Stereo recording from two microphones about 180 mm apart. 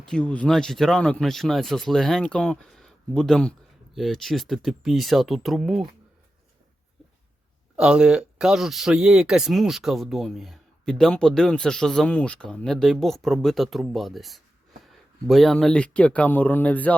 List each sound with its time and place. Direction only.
0.0 s speech: 5° left (ahead or behind)
7.8 s speech: 5° right (ahead or behind)